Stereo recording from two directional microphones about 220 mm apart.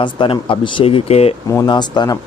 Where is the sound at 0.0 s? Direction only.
20° left (ahead or behind).